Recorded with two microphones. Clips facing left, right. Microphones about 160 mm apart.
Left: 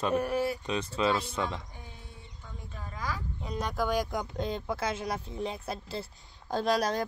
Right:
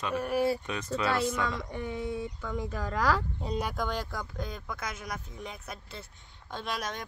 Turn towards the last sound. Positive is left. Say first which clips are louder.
# left 8 dB
turn(degrees=35)  # may be behind; listen again after turning